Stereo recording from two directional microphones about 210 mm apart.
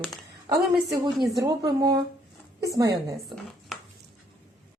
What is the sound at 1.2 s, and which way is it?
Speech, 20° right (ahead or behind).